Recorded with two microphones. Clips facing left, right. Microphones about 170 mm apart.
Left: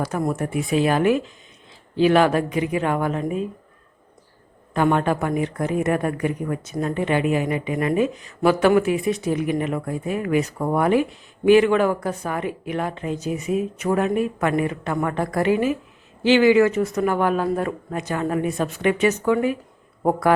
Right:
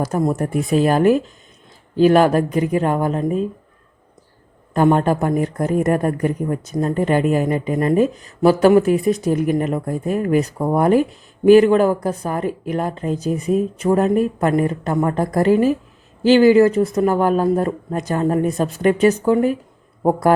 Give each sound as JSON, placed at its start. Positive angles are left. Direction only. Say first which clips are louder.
{"t": 0.3, "sound": "a woman's voice", "louder": "right 4 dB", "side_deg": -40}
{"t": 4.7, "sound": "a woman's voice", "louder": "right 4 dB", "side_deg": -40}